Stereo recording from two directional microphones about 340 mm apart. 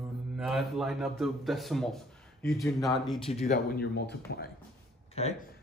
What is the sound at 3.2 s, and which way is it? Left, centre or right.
Speech, centre.